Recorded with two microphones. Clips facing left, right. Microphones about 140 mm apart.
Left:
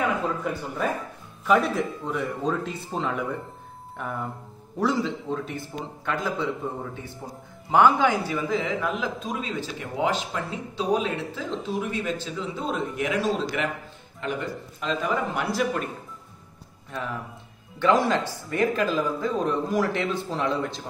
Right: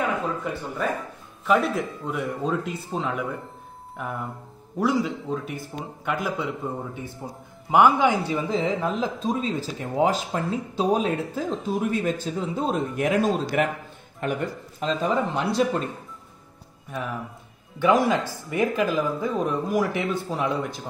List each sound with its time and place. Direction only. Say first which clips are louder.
1.4 s speech: even; centre (ahead or behind)
8.4 s a man's voice: right 2 dB; 30° right (ahead or behind); by 14.9 s 45° right (ahead or behind)
14.9 s speech: right 2 dB; 30° right (ahead or behind)
17.7 s speech: right 1 dB; 15° right (ahead or behind)